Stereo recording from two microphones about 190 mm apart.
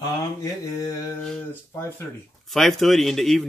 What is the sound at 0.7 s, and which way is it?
Speech, 15° left (ahead or behind).